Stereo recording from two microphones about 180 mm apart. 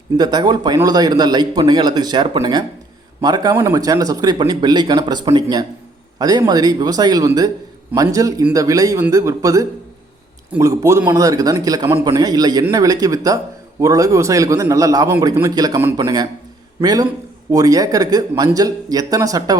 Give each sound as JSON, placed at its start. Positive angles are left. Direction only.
{"t": 0.2, "sound": "a man's voice", "side_deg": -25}